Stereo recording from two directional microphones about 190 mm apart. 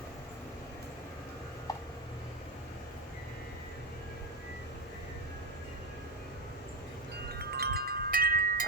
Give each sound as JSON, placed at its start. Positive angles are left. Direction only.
{"t": 7.3, "sound": "chime", "side_deg": -55}